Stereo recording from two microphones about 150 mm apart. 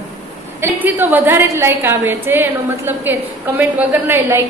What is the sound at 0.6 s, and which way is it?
A woman's voice, 15° right (ahead or behind).